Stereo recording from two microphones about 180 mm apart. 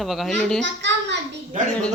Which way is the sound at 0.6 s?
80° right.